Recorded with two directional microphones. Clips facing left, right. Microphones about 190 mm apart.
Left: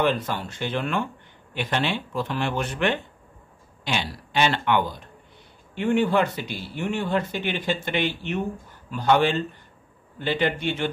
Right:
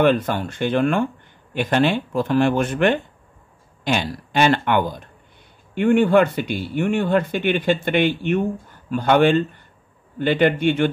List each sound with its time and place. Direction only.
0.0 s speech: 55° right (ahead or behind)